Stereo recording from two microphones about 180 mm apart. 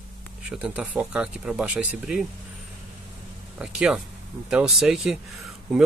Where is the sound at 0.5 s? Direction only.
5° right (ahead or behind).